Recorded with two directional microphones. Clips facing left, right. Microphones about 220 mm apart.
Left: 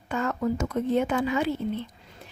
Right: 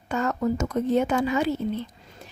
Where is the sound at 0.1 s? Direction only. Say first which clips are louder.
Right 2 dB; 40° right (ahead or behind).